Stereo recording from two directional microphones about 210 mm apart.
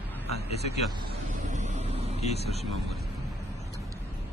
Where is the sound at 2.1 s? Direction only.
30° left (ahead or behind).